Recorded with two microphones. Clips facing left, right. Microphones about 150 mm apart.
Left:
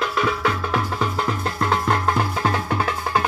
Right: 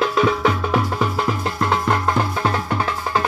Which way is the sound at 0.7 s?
5° right (ahead or behind).